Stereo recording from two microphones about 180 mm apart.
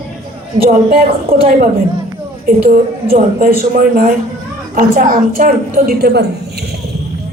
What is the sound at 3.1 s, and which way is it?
A woman's voice, 50° right (ahead or behind).